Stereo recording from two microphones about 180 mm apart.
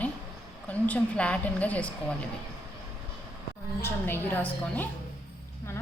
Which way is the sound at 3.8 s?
10° left (ahead or behind).